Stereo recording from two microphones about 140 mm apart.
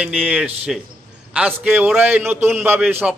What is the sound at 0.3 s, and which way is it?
A man's voice, 5° right (ahead or behind).